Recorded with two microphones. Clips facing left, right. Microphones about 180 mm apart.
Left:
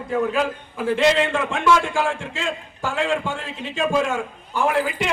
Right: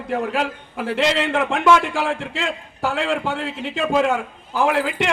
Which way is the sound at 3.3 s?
65° right (ahead or behind).